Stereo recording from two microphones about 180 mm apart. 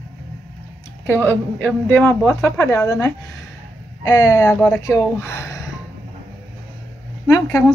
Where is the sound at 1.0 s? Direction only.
10° left (ahead or behind).